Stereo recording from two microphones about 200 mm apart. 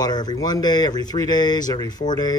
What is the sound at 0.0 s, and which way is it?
A man's voice, 20° left (ahead or behind).